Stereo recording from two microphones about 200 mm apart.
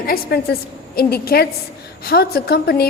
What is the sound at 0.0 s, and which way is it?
A woman's voice, 50° left (ahead or behind).